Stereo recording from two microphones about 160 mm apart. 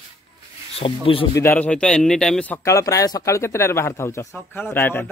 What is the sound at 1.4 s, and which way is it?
Speech, 10° left (ahead or behind).